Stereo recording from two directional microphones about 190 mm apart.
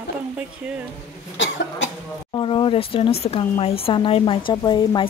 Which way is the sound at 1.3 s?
75° left (ahead or behind).